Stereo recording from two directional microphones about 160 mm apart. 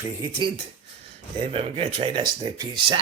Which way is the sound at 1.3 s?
35° right (ahead or behind).